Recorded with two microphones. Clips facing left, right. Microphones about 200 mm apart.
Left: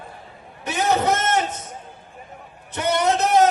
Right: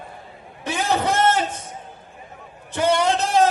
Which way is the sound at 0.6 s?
30° right (ahead or behind).